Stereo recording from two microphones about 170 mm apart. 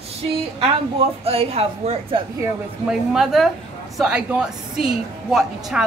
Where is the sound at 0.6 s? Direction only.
35° right (ahead or behind).